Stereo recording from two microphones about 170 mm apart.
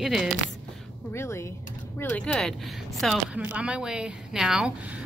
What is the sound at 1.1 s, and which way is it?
A woman's voice, 15° left (ahead or behind).